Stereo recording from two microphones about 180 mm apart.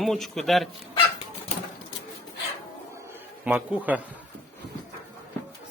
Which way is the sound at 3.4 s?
10° right (ahead or behind).